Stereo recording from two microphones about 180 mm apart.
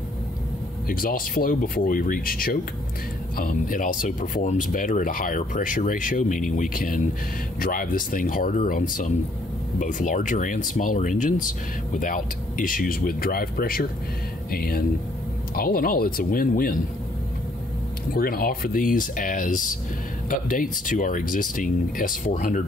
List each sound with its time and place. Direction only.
0.8 s speech: 50° left (ahead or behind)
18.1 s speech: 55° left (ahead or behind)